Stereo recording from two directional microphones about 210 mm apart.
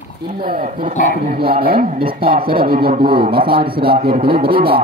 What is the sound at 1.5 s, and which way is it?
Speech, 45° right (ahead or behind).